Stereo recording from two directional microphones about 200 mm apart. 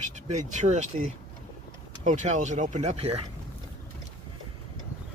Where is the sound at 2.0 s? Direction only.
35° right (ahead or behind).